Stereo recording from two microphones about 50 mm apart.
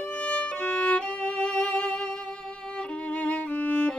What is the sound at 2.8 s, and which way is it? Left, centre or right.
Music, left.